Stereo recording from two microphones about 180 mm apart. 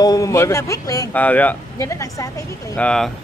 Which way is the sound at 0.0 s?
20° left (ahead or behind).